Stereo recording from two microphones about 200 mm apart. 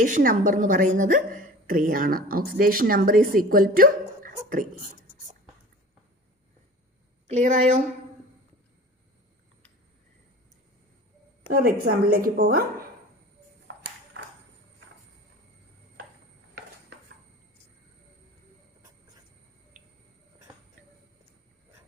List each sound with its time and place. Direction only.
0.0 s a woman's voice: 45° right (ahead or behind)
7.3 s speech: 35° right (ahead or behind)
11.5 s a woman's voice: 50° right (ahead or behind)